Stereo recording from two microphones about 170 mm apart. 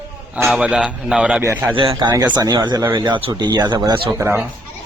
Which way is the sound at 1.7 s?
30° right (ahead or behind).